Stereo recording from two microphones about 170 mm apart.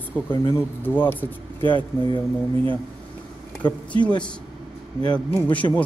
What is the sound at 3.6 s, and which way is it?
Speech, 25° left (ahead or behind).